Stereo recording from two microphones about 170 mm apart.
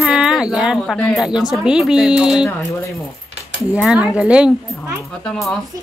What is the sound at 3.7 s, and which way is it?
Speech, 5° right (ahead or behind).